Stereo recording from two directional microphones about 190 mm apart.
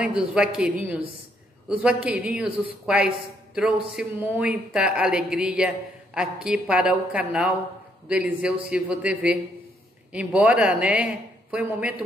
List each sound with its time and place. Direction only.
0.0 s speech: 5° right (ahead or behind)